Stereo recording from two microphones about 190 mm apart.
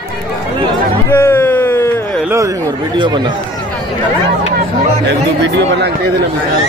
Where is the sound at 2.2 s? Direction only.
15° right (ahead or behind).